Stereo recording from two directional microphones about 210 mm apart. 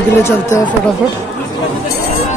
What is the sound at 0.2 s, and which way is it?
Speech, 15° left (ahead or behind).